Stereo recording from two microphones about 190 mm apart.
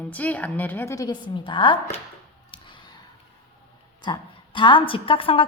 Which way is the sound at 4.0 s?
25° left (ahead or behind).